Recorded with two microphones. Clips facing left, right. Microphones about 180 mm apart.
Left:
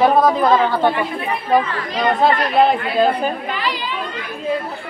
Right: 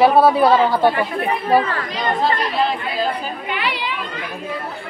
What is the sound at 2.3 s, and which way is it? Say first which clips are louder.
Speech: left 7 dB; 55° left (ahead or behind).